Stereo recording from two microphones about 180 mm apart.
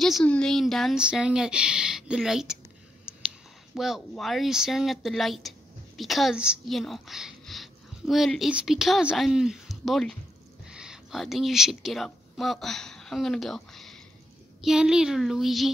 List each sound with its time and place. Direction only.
0.0 s speech: 5° left (ahead or behind)
3.1 s whispering: 5° right (ahead or behind)
3.7 s speech: centre (ahead or behind)